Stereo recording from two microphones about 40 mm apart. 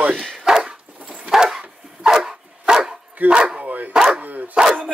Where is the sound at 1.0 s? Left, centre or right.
Right.